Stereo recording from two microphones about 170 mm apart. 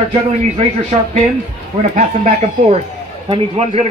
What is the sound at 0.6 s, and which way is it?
Speech, 40° right (ahead or behind).